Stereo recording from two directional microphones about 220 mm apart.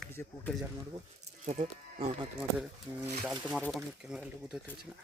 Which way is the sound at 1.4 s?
30° right (ahead or behind).